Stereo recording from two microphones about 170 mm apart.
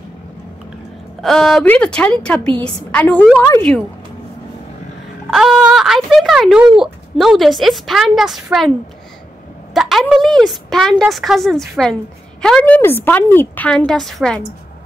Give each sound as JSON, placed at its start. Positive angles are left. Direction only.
{"t": 1.2, "sound": "a woman's voice", "side_deg": 0}
{"t": 5.3, "sound": "a woman's voice", "side_deg": -5}
{"t": 9.8, "sound": "a woman's voice", "side_deg": 0}